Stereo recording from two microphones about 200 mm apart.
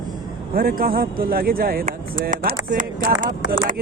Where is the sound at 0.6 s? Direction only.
45° right (ahead or behind).